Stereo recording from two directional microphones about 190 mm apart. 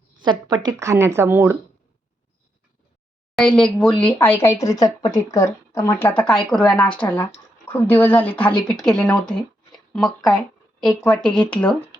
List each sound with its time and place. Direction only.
0.2 s speech: 20° right (ahead or behind)
3.3 s speech: 5° left (ahead or behind)